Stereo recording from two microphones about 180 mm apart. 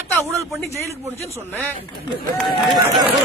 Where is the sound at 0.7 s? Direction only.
15° right (ahead or behind).